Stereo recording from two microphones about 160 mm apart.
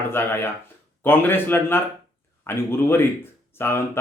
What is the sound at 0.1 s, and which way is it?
Speech, 15° left (ahead or behind).